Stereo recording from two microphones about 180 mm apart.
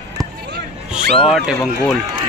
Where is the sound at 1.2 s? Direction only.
Centre (ahead or behind).